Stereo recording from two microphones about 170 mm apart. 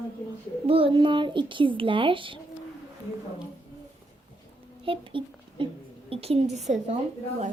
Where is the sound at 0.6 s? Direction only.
30° right (ahead or behind).